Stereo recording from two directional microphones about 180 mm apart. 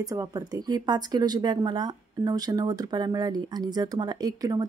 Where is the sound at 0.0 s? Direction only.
20° right (ahead or behind).